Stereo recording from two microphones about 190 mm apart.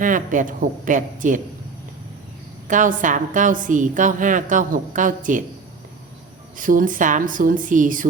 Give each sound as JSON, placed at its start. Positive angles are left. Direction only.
{"t": 0.0, "sound": "a woman's voice", "side_deg": -45}
{"t": 2.6, "sound": "a woman's voice", "side_deg": -45}
{"t": 6.6, "sound": "a woman's voice", "side_deg": -45}